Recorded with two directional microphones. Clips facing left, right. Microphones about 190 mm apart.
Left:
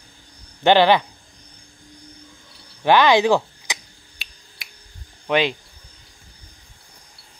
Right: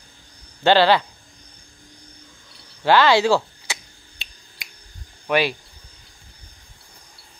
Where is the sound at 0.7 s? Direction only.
15° left (ahead or behind).